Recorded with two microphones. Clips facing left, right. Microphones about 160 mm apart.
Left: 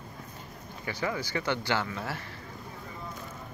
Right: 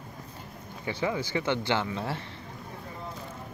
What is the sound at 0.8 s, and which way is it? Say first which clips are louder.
Speech: right 3 dB; 25° right (ahead or behind).